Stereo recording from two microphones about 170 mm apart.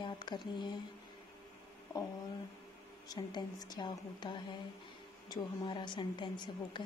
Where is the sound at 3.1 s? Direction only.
25° left (ahead or behind).